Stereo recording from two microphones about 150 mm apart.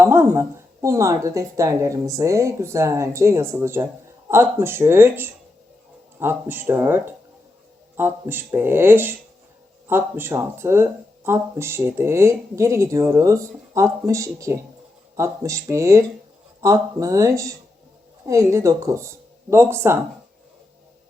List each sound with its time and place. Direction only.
0.0 s speech: 15° right (ahead or behind)